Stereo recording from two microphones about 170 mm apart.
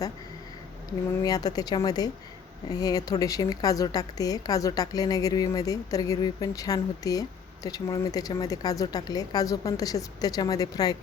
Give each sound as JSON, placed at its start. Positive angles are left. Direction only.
{"t": 1.2, "sound": "a woman's voice", "side_deg": 20}